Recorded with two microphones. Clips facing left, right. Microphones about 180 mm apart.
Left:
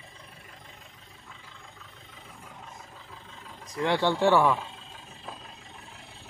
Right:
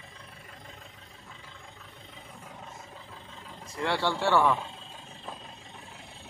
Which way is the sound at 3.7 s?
15° left (ahead or behind).